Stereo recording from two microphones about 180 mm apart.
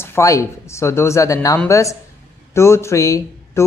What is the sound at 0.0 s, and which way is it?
Speech, 15° left (ahead or behind).